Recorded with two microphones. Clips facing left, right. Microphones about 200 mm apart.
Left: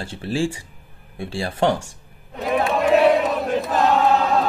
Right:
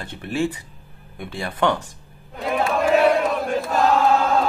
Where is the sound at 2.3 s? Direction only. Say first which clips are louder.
Left 1 dB; centre (ahead or behind).